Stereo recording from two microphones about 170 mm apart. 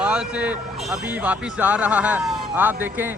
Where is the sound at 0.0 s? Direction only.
10° right (ahead or behind).